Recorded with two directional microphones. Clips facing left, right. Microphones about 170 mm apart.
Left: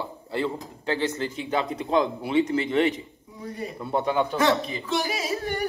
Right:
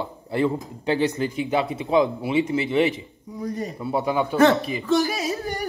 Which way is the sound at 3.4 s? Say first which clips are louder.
Right 5 dB; 40° right (ahead or behind).